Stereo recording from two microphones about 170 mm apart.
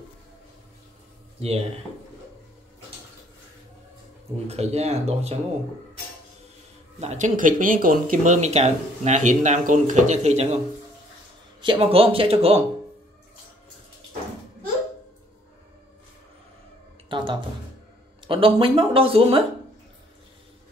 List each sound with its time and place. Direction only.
4.5 s speech: 40° right (ahead or behind)
7.0 s speech: 45° right (ahead or behind)
11.6 s speech: 30° right (ahead or behind)
17.1 s music: 30° right (ahead or behind)
18.2 s speech: 30° right (ahead or behind)